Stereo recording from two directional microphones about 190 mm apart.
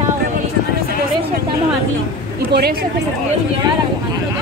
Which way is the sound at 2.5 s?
55° right (ahead or behind).